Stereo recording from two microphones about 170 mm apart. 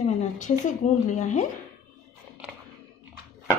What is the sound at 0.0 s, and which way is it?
Speech, 45° left (ahead or behind).